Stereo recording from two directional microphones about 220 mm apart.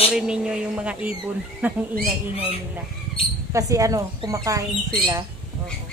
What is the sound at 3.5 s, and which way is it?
Speech, 15° right (ahead or behind).